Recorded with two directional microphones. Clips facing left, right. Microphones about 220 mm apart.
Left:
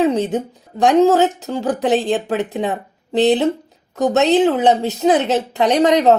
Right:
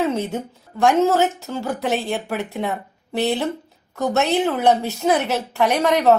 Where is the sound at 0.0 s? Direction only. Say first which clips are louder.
Left 5 dB; 15° left (ahead or behind).